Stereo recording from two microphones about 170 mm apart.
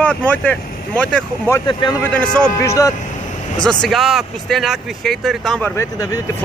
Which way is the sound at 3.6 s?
5° left (ahead or behind).